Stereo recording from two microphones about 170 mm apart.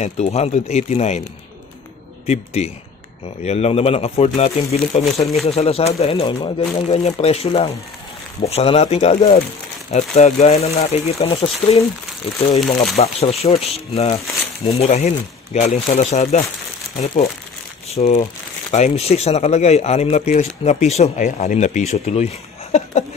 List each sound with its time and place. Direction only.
0.0 s speech: 40° left (ahead or behind)
2.2 s speech: 40° left (ahead or behind)
6.9 s speech: 40° left (ahead or behind)
12.9 s speech: 35° left (ahead or behind)